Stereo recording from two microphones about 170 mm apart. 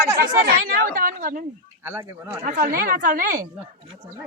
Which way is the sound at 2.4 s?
50° right (ahead or behind).